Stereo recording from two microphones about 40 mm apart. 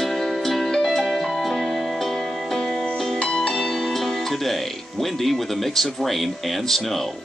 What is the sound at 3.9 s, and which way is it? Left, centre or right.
Speech, centre.